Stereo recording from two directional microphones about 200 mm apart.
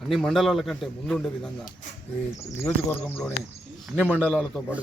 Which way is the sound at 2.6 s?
10° left (ahead or behind).